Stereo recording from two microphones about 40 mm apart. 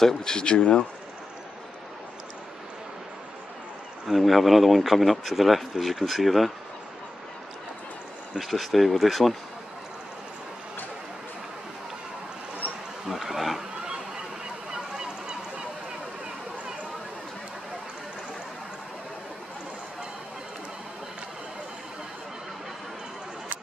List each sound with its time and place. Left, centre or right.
0.0 s speech: centre
4.1 s speech: centre
8.4 s speech: centre
13.1 s speech: centre
14.7 s honk: right